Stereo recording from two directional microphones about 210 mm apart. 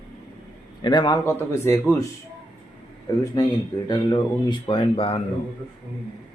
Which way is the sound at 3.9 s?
20° left (ahead or behind).